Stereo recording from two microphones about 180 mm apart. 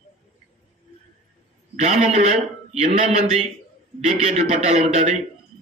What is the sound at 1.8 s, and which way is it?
A man's voice, 40° right (ahead or behind).